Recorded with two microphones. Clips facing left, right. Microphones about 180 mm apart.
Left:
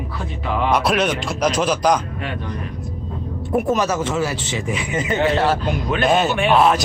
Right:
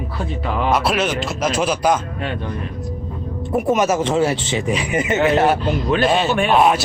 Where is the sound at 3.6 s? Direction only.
20° right (ahead or behind).